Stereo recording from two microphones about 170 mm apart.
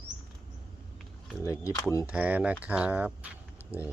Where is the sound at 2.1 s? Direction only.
10° right (ahead or behind).